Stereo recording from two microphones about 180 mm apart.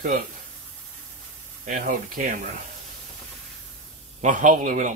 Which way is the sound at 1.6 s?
50° right (ahead or behind).